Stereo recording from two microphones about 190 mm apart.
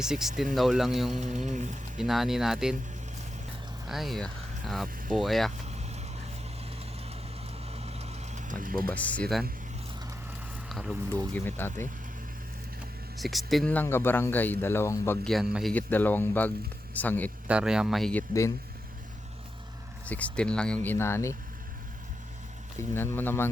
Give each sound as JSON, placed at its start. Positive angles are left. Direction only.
{"t": 0.0, "sound": "speech", "side_deg": -5}
{"t": 1.5, "sound": "speech", "side_deg": -40}
{"t": 2.0, "sound": "speech", "side_deg": 0}
{"t": 3.8, "sound": "speech", "side_deg": 0}
{"t": 7.8, "sound": "vehicle", "side_deg": -35}
{"t": 8.9, "sound": "speech", "side_deg": 10}
{"t": 10.7, "sound": "speech", "side_deg": 0}
{"t": 13.1, "sound": "speech", "side_deg": 0}
{"t": 15.7, "sound": "speech", "side_deg": 10}
{"t": 17.5, "sound": "speech", "side_deg": -5}
{"t": 20.1, "sound": "speech", "side_deg": 5}
{"t": 22.8, "sound": "speech", "side_deg": 10}